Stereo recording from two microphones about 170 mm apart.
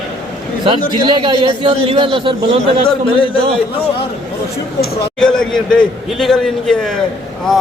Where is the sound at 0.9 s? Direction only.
30° right (ahead or behind).